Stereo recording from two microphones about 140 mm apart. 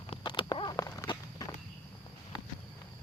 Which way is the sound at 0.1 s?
35° left (ahead or behind).